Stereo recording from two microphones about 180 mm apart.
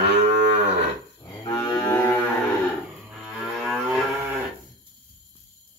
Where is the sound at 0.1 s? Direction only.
35° right (ahead or behind).